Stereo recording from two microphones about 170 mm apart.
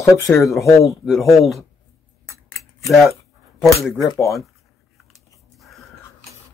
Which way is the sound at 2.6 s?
Centre (ahead or behind).